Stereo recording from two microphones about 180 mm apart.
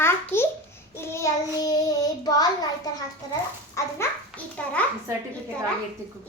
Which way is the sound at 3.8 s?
15° left (ahead or behind).